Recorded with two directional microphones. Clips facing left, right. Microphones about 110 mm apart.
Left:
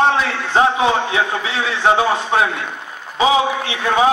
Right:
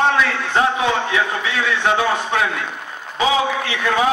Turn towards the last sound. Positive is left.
turn(degrees=25)  # may be behind; listen again after turning